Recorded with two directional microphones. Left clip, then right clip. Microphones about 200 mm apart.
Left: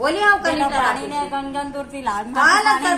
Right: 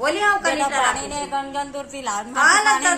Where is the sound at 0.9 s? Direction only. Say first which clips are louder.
Left 2 dB; 40° right (ahead or behind).